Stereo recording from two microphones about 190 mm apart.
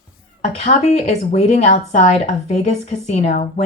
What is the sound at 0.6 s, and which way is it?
Speech, 35° left (ahead or behind).